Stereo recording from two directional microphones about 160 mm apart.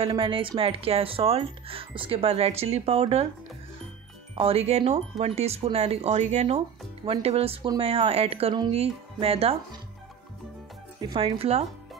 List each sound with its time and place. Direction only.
0.0 s speech: 30° right (ahead or behind)
4.4 s speech: 40° right (ahead or behind)
11.0 s speech: 25° right (ahead or behind)
11.3 s speech: 40° right (ahead or behind)